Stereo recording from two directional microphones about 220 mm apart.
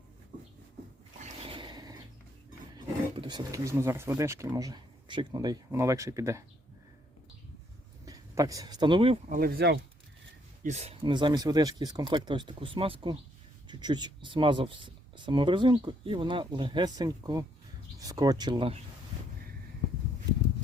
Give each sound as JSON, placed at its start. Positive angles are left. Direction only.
{"t": 1.2, "sound": "a sound", "side_deg": -25}
{"t": 2.7, "sound": "speech", "side_deg": -20}
{"t": 8.0, "sound": "speech", "side_deg": -15}
{"t": 9.3, "sound": "speech", "side_deg": -40}
{"t": 10.6, "sound": "speech", "side_deg": -30}